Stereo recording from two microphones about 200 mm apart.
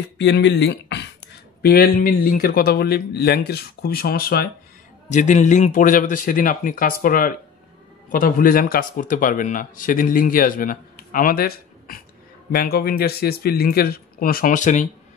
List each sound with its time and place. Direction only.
0.2 s speech: 60° left (ahead or behind)
5.1 s speech: 35° left (ahead or behind)